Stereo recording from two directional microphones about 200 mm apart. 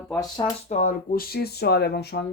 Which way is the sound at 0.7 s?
40° left (ahead or behind).